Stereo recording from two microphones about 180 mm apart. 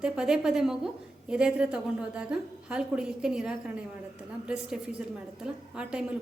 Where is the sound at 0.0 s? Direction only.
5° right (ahead or behind).